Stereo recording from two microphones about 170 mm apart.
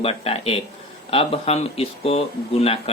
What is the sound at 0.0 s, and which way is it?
Speech, 35° left (ahead or behind).